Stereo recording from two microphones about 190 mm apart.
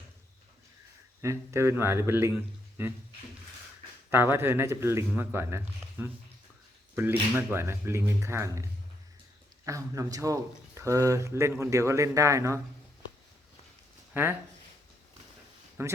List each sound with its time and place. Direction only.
1.2 s speech: 15° right (ahead or behind)
4.1 s speech: 10° right (ahead or behind)
9.6 s speech: 15° right (ahead or behind)
14.1 s speech: 10° right (ahead or behind)
15.8 s speech: 15° right (ahead or behind)